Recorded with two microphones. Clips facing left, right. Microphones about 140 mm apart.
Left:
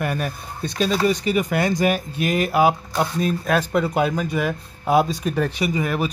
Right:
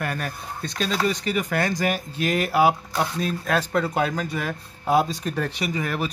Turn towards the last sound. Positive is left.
turn(degrees=15)  # may be behind; listen again after turning